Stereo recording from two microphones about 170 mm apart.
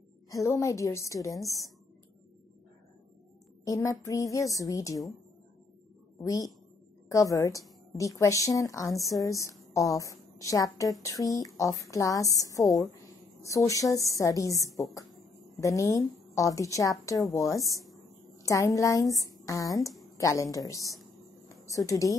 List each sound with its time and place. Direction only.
0.3 s a woman's voice: 20° left (ahead or behind)
3.6 s a woman's voice: 20° left (ahead or behind)
6.2 s a woman's voice: 20° left (ahead or behind)